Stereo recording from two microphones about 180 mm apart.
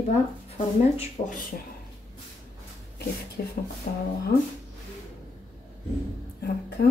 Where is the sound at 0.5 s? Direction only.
30° left (ahead or behind).